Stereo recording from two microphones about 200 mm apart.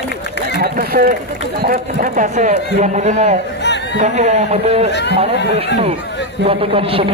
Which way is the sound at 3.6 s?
60° left (ahead or behind).